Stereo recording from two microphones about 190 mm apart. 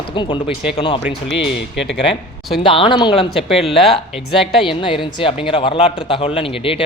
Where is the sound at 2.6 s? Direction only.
25° left (ahead or behind).